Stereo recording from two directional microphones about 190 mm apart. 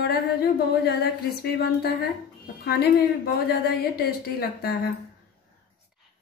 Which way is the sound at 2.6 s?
55° left (ahead or behind).